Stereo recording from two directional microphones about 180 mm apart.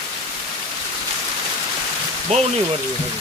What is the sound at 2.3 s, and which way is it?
Speech, 40° right (ahead or behind).